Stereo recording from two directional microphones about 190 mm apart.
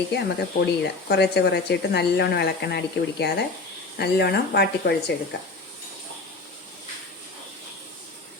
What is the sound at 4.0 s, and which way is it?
Speech, 55° left (ahead or behind).